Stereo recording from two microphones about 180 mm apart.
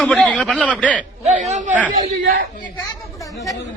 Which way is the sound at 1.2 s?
40° right (ahead or behind).